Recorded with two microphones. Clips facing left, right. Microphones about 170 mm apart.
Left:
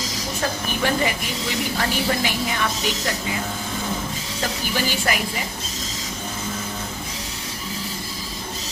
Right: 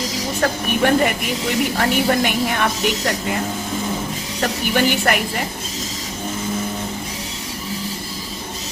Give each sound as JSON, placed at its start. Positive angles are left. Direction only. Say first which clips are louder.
{"t": 0.4, "sound": "a woman's voice", "louder": "right 6 dB", "side_deg": -55}
{"t": 4.4, "sound": "a woman's voice", "louder": "right 6 dB", "side_deg": -60}